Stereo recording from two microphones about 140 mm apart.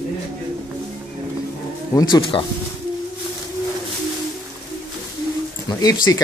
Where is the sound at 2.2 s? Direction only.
35° left (ahead or behind).